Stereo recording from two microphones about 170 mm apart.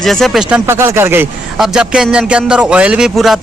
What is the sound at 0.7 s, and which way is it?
Speech, 15° right (ahead or behind).